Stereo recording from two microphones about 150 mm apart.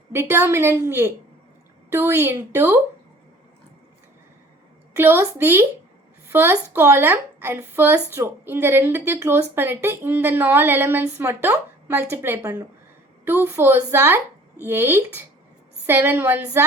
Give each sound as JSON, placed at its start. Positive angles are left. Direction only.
{"t": 0.1, "sound": "speech", "side_deg": -15}
{"t": 4.9, "sound": "a woman's voice", "side_deg": -15}